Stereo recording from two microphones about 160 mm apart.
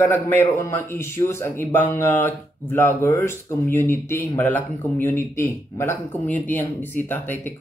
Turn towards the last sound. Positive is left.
turn(degrees=10)  # may be behind; listen again after turning